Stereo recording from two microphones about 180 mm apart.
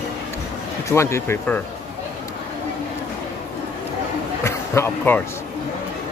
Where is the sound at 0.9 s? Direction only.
15° left (ahead or behind).